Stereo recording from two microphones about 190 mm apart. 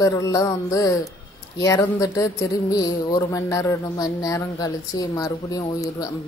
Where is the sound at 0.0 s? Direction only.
15° left (ahead or behind).